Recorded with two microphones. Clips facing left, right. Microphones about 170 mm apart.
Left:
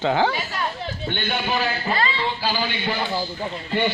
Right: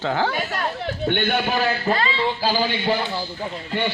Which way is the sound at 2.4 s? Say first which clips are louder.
Right 5 dB; 35° right (ahead or behind).